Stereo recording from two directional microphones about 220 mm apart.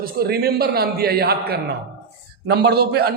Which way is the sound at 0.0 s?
45° right (ahead or behind).